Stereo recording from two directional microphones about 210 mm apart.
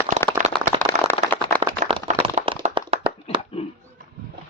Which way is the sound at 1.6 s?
25° right (ahead or behind).